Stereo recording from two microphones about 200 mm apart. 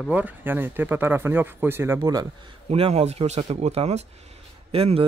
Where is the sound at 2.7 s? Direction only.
30° right (ahead or behind).